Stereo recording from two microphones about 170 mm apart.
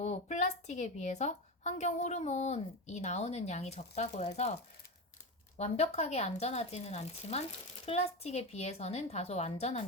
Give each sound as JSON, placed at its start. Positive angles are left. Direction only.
{"t": 0.0, "sound": "a woman's voice", "side_deg": 40}
{"t": 5.5, "sound": "a woman's voice", "side_deg": 40}